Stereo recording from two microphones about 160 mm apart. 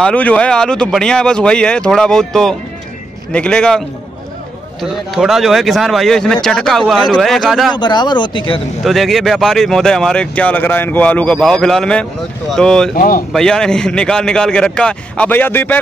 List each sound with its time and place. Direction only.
0.0 s speech: 10° left (ahead or behind)
4.8 s speech: centre (ahead or behind)
7.7 s speech: 30° left (ahead or behind)
8.8 s speech: centre (ahead or behind)
12.9 s speech: 60° left (ahead or behind)
13.3 s speech: 5° left (ahead or behind)